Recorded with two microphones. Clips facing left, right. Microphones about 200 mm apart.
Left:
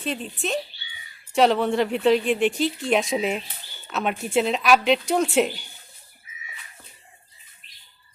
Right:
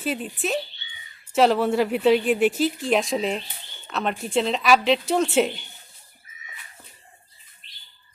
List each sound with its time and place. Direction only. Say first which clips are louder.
0.0 s speech: right 2 dB; 5° right (ahead or behind)
7.6 s bird: right 3 dB; 30° right (ahead or behind)